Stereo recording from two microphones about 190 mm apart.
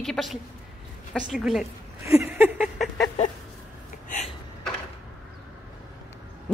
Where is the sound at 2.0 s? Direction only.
15° right (ahead or behind).